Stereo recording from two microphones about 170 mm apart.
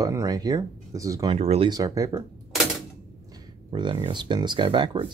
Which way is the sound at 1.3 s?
35° right (ahead or behind).